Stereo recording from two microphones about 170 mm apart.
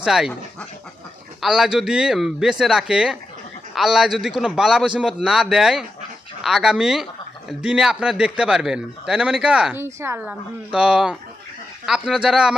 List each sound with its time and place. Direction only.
0.0 s a man's voice: centre (ahead or behind)
1.4 s a man's voice: 5° right (ahead or behind)